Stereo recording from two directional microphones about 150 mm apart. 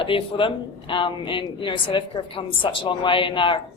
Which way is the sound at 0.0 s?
35° left (ahead or behind).